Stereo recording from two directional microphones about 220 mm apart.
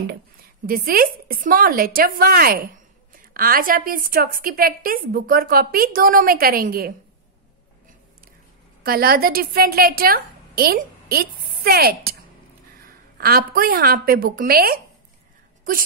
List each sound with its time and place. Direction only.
0.7 s a woman's voice: 40° right (ahead or behind)
8.8 s a woman's voice: 45° right (ahead or behind)